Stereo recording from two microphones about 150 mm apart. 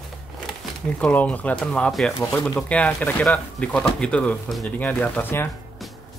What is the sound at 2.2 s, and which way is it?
Speech, 15° left (ahead or behind).